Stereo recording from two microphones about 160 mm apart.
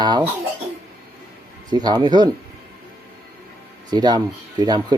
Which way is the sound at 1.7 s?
25° right (ahead or behind).